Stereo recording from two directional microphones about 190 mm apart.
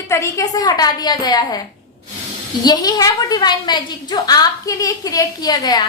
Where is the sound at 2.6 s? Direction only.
20° left (ahead or behind).